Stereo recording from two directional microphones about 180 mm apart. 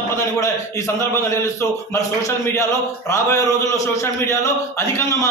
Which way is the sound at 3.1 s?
15° left (ahead or behind).